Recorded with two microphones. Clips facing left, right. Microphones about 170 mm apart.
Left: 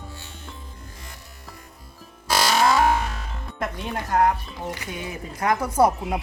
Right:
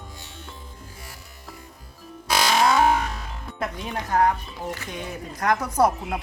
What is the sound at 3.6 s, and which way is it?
Speech, centre (ahead or behind).